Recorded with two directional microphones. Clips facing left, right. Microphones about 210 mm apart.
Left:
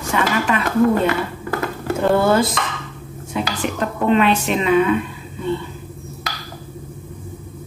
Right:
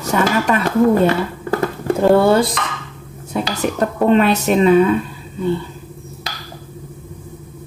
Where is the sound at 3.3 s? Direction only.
40° right (ahead or behind).